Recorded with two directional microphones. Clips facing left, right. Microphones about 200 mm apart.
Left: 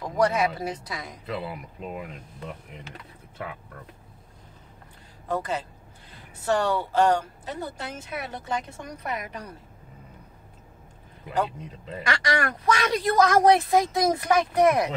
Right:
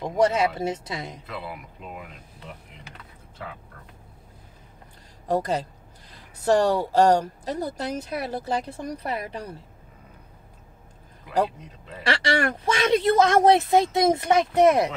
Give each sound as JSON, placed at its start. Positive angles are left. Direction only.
{"t": 0.0, "sound": "speech", "side_deg": -25}
{"t": 5.3, "sound": "speech", "side_deg": -40}
{"t": 12.0, "sound": "speech", "side_deg": -30}